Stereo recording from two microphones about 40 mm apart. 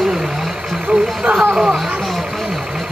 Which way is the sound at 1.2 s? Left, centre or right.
Right.